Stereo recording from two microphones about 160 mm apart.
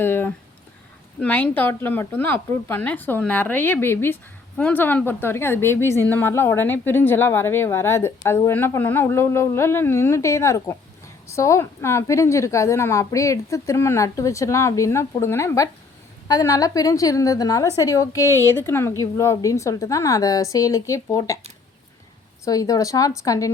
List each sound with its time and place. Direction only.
0.0 s a sound: 15° left (ahead or behind)
1.2 s a woman's voice: 10° left (ahead or behind)
22.4 s a woman's voice: 20° left (ahead or behind)